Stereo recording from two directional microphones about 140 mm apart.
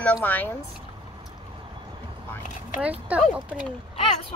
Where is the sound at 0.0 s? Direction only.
10° left (ahead or behind).